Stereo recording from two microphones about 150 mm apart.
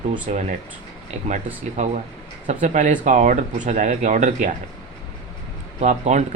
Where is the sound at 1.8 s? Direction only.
50° right (ahead or behind).